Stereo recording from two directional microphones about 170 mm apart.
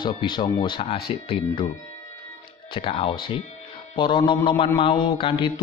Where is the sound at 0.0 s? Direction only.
25° left (ahead or behind).